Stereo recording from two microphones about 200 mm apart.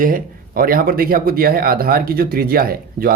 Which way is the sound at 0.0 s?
45° right (ahead or behind).